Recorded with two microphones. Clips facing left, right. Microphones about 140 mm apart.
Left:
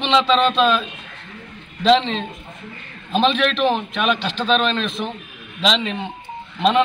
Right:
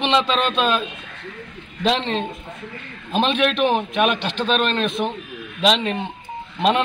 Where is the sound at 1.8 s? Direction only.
50° right (ahead or behind).